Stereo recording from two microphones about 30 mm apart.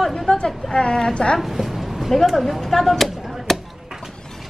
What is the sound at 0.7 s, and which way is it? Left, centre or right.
Speech, left.